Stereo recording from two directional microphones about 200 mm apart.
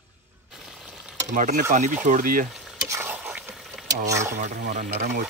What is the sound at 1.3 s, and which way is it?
Speech, 40° right (ahead or behind).